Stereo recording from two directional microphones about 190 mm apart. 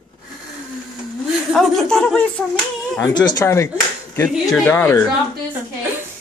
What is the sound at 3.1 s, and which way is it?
Speech, 20° left (ahead or behind).